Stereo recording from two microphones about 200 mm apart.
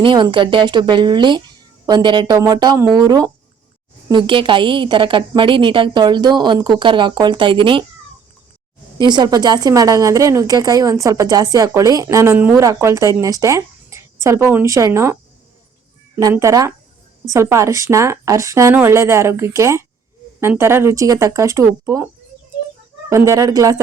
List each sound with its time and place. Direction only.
0.0 s a woman's voice: 25° right (ahead or behind)
9.0 s a woman's voice: 20° right (ahead or behind)
23.0 s a woman's voice: 15° right (ahead or behind)